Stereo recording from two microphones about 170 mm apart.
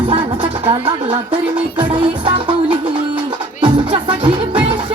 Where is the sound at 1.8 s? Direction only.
30° right (ahead or behind).